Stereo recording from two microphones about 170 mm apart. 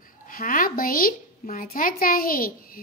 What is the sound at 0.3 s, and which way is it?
A woman's voice, 55° left (ahead or behind).